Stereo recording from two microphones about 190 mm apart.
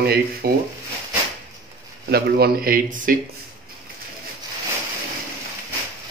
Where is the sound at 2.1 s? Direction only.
55° right (ahead or behind).